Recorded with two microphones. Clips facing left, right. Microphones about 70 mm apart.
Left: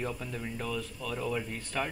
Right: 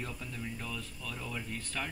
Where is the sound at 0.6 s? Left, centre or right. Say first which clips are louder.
Left 6 dB; centre.